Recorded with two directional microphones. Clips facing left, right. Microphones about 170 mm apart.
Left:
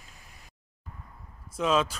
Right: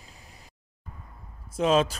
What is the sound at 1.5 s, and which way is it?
Speech, 30° right (ahead or behind).